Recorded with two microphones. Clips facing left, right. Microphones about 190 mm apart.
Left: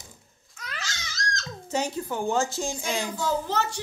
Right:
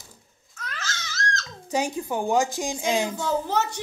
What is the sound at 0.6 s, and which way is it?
Babbling, 10° left (ahead or behind).